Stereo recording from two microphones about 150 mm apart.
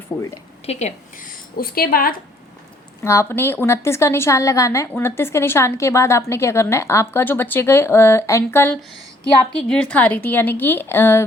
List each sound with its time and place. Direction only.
0.1 s a woman's voice: 10° left (ahead or behind)
0.6 s a woman's voice: 45° left (ahead or behind)
1.5 s a woman's voice: 90° left
3.0 s a woman's voice: 20° left (ahead or behind)